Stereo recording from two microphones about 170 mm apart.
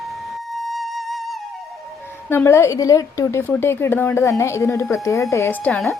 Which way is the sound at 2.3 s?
15° left (ahead or behind).